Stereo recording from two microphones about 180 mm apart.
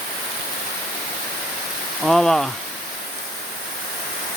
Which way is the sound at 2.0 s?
Centre (ahead or behind).